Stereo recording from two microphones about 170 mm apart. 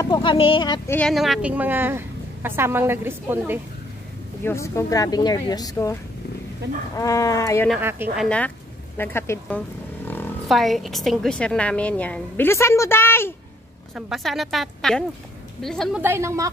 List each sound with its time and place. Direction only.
0.0 s speech: 25° left (ahead or behind)
0.8 s a woman's voice: 10° left (ahead or behind)
1.1 s a woman's voice: centre (ahead or behind)
4.4 s speech: 15° left (ahead or behind)
7.0 s speech: 20° left (ahead or behind)
7.8 s a woman's voice: 10° right (ahead or behind)
8.2 s a woman's voice: 5° left (ahead or behind)
10.0 s roaring cats: 10° left (ahead or behind)
10.5 s a woman's voice: centre (ahead or behind)
13.9 s a woman's voice: 5° right (ahead or behind)
16.0 s a woman's voice: 15° right (ahead or behind)